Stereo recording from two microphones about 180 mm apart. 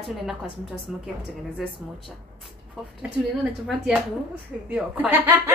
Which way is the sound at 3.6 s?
5° right (ahead or behind).